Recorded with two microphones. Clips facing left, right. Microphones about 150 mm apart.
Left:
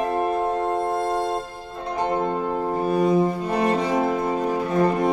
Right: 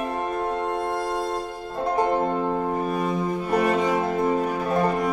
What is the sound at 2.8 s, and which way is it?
Cello, 35° left (ahead or behind).